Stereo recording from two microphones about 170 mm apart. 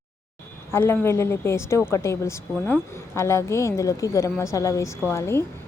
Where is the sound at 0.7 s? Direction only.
15° left (ahead or behind).